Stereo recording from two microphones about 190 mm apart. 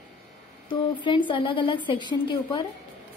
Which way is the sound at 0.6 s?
25° left (ahead or behind).